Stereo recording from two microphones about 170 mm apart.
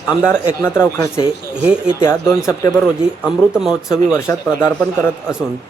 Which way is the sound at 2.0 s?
15° left (ahead or behind).